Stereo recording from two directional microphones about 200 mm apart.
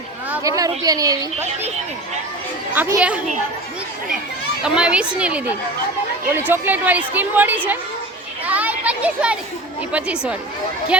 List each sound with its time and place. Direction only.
0.3 s a woman's voice: 15° right (ahead or behind)
2.7 s a woman's voice: 10° right (ahead or behind)
4.6 s a child's voice: 5° right (ahead or behind)
8.4 s children playing: 10° right (ahead or behind)
9.9 s a child's voice: 5° right (ahead or behind)